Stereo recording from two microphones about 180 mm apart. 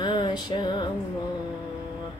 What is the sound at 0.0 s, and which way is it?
Music, 25° left (ahead or behind).